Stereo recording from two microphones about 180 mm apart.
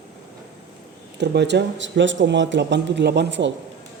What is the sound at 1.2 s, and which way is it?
Speech, 70° right (ahead or behind).